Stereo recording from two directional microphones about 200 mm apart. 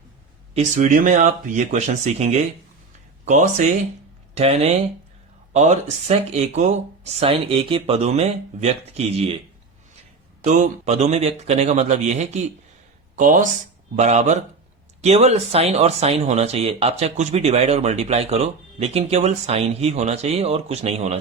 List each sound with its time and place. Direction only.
0.5 s speech: 40° right (ahead or behind)
10.4 s speech: 35° right (ahead or behind)